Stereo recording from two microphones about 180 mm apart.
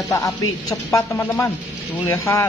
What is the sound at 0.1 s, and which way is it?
A woman's voice, 20° left (ahead or behind).